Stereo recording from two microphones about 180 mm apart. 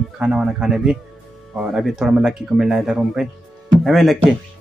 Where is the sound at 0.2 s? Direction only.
5° right (ahead or behind).